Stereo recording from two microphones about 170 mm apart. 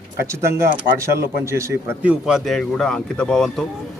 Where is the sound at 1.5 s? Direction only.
15° right (ahead or behind).